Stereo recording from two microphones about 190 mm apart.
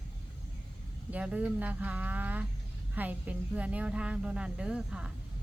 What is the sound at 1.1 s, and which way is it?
Speech, 5° right (ahead or behind).